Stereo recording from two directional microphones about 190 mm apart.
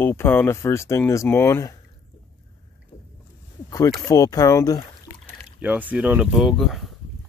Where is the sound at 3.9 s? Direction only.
20° left (ahead or behind).